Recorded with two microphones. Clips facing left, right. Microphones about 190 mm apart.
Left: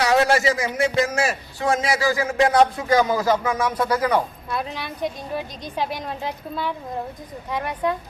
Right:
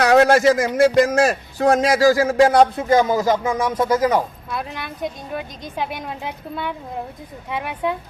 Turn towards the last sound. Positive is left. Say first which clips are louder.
# even
turn(degrees=-5)  # may be behind; listen again after turning